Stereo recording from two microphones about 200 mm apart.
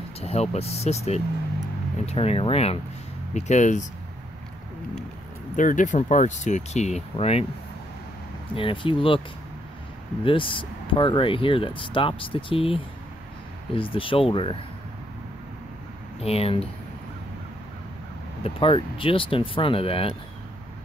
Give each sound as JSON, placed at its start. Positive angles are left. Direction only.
{"t": 0.2, "sound": "speech", "side_deg": 30}
{"t": 5.6, "sound": "speech", "side_deg": 40}
{"t": 8.5, "sound": "speech", "side_deg": 25}
{"t": 10.2, "sound": "speech", "side_deg": 25}
{"t": 16.2, "sound": "speech", "side_deg": 30}
{"t": 18.4, "sound": "speech", "side_deg": 25}